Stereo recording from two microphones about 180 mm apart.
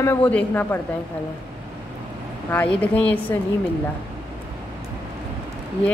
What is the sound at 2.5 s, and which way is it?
Speech, 10° left (ahead or behind).